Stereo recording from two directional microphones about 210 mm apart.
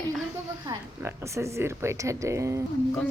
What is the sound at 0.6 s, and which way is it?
Speech, 15° right (ahead or behind).